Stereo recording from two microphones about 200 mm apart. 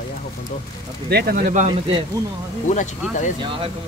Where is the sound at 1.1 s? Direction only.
50° right (ahead or behind).